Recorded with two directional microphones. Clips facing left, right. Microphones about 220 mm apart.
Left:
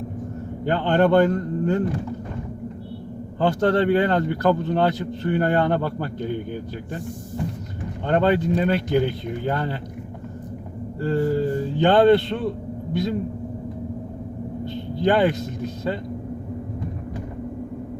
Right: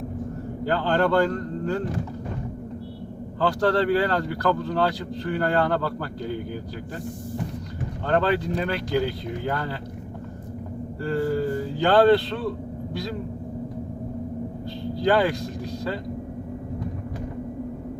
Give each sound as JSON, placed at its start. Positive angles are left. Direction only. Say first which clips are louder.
{"t": 0.6, "sound": "a man's voice", "louder": "left 3 dB", "side_deg": 25}
{"t": 3.4, "sound": "a man's voice", "louder": "left 2 dB", "side_deg": 25}
{"t": 8.0, "sound": "a man's voice", "louder": "left 3 dB", "side_deg": 25}
{"t": 11.0, "sound": "a man's voice", "louder": "left 3 dB", "side_deg": 25}
{"t": 15.0, "sound": "a man's voice", "louder": "left 2 dB", "side_deg": 25}